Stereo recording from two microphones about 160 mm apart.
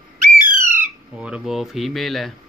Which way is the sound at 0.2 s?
55° right (ahead or behind).